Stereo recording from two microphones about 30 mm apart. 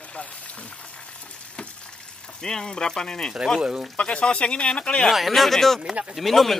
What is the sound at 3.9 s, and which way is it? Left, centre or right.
Speech, left.